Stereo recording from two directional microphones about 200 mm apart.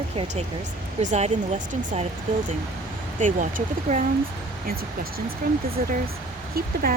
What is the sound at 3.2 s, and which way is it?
Speech, 40° right (ahead or behind).